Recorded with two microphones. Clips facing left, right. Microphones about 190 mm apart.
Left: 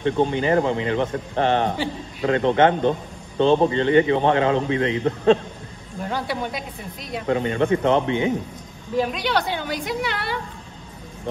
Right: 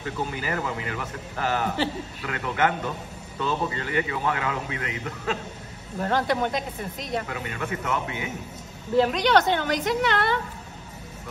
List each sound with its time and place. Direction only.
0.0 s a man's voice: 25° left (ahead or behind)
6.0 s speech: 10° left (ahead or behind)
7.2 s a man's voice: 30° left (ahead or behind)
8.9 s speech: 10° left (ahead or behind)